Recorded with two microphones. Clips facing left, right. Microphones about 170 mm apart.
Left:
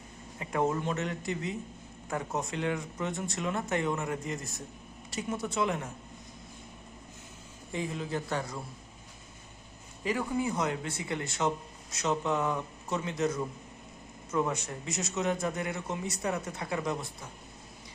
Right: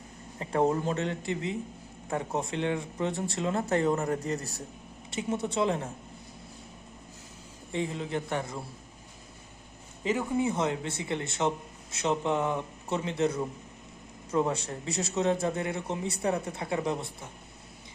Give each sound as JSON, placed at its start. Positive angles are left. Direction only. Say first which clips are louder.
{"t": 0.3, "sound": "speech", "louder": "right 3 dB", "side_deg": -30}
{"t": 7.7, "sound": "speech", "louder": "right 2 dB", "side_deg": -25}
{"t": 10.0, "sound": "speech", "louder": "right 3 dB", "side_deg": -20}